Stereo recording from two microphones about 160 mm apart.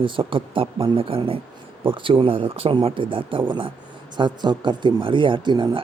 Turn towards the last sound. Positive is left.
turn(degrees=-30)  # may be behind; listen again after turning